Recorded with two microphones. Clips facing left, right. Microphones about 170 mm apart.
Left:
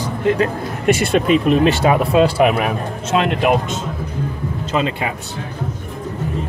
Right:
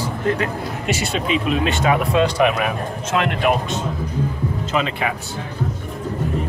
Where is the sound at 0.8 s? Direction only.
55° left (ahead or behind); by 3.8 s 20° left (ahead or behind).